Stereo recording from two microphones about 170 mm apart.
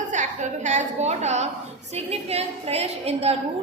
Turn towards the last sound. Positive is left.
turn(degrees=-35)  # may be behind; listen again after turning